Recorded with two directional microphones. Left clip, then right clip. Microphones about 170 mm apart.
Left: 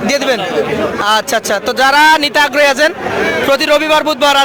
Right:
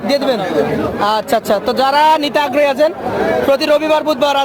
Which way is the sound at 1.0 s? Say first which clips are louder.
Even; centre (ahead or behind).